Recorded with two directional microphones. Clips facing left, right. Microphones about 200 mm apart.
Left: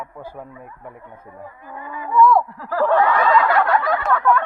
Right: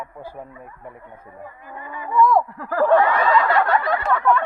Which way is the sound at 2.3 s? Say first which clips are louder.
Left 1 dB; 50° right (ahead or behind).